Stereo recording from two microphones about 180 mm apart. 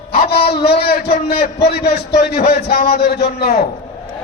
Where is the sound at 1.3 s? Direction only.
60° left (ahead or behind).